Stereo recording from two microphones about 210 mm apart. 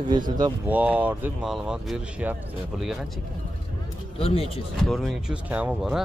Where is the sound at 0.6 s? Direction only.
5° right (ahead or behind).